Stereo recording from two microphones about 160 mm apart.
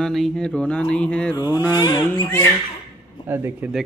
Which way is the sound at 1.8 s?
25° left (ahead or behind).